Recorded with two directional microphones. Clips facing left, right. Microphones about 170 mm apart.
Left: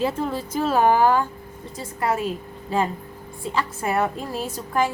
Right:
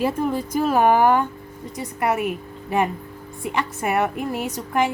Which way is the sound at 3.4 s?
20° right (ahead or behind).